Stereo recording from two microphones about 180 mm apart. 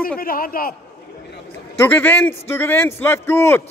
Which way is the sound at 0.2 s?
55° left (ahead or behind).